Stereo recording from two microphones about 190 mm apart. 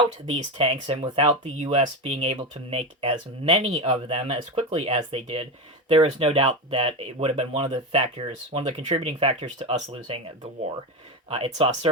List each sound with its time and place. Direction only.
0.3 s speech: 30° right (ahead or behind)